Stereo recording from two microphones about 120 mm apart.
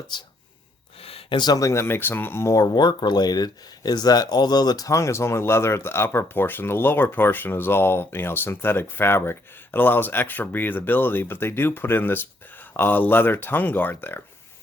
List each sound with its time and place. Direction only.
0.1 s speech: 35° left (ahead or behind)
1.0 s a sound: 55° left (ahead or behind)
1.4 s speech: 30° left (ahead or behind)
2.7 s speech: 40° left (ahead or behind); by 14.2 s 15° left (ahead or behind)